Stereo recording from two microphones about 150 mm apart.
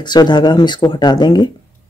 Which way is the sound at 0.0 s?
30° left (ahead or behind).